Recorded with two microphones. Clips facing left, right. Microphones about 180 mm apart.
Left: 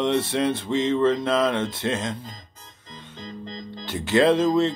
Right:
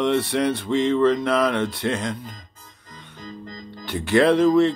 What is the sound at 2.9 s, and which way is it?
Music, 25° left (ahead or behind).